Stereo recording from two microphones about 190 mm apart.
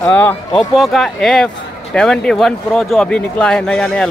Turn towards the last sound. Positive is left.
turn(degrees=5)  # may be behind; listen again after turning